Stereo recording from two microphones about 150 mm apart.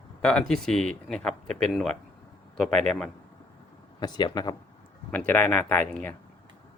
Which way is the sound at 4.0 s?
25° left (ahead or behind).